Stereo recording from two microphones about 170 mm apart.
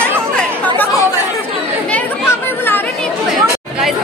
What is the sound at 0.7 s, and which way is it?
Chatter, 20° left (ahead or behind).